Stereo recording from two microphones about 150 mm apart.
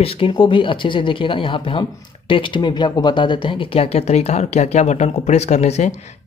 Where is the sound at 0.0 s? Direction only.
40° left (ahead or behind).